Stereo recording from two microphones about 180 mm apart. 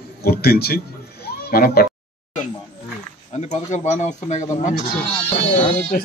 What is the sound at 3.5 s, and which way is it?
Speech, 40° left (ahead or behind).